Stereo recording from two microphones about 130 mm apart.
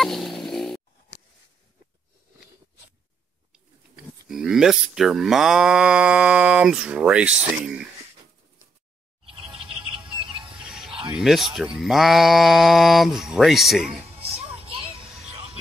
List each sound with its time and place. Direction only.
0.0 s a sound: centre (ahead or behind)
3.5 s speech: 5° right (ahead or behind)
9.2 s chirp: 40° right (ahead or behind)
10.6 s music: 5° right (ahead or behind)
10.9 s a sound: 40° right (ahead or behind)
11.1 s speech: 5° right (ahead or behind)
14.1 s music: 50° right (ahead or behind)